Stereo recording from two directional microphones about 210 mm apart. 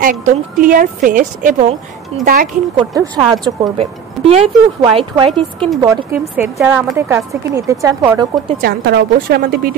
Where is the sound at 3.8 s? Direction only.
30° right (ahead or behind).